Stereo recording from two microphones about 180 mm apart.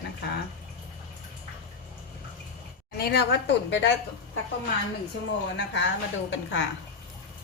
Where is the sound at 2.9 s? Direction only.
65° left (ahead or behind).